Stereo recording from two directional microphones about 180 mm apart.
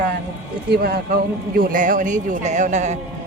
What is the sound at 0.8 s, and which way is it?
A man's voice, 55° right (ahead or behind).